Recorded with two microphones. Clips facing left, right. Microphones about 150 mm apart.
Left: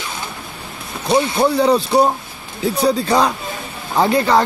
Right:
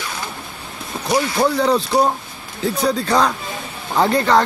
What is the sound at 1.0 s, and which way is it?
Speech, 25° left (ahead or behind).